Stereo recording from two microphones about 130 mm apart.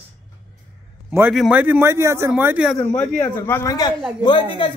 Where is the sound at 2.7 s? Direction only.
5° left (ahead or behind).